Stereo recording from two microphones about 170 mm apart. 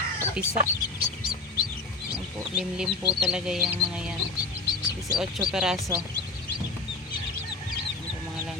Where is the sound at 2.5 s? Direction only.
5° right (ahead or behind).